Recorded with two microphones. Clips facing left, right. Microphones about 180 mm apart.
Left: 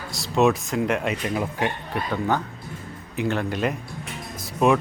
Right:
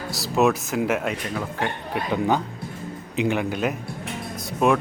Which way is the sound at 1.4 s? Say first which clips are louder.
Left 2 dB; 15° left (ahead or behind).